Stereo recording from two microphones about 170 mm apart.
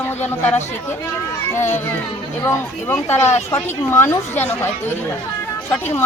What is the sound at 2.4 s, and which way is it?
A woman's voice, 10° left (ahead or behind).